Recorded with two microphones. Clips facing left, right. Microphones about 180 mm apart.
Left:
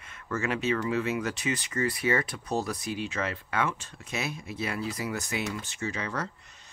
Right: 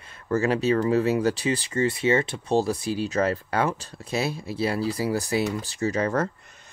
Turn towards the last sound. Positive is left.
turn(degrees=-45)  # may be behind; listen again after turning